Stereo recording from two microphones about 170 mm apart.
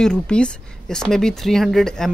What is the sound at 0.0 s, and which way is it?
Speech, 5° left (ahead or behind).